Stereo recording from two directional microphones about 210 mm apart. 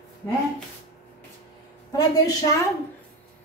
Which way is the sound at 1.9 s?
15° left (ahead or behind).